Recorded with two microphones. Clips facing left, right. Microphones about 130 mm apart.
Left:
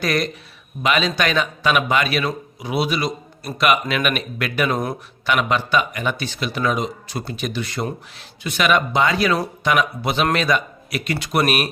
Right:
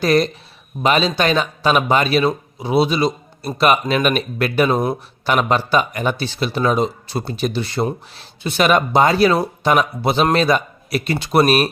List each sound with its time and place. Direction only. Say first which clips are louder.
0.0 s speech: right 6 dB; 30° right (ahead or behind)
5.3 s speech: right 3 dB; 40° right (ahead or behind)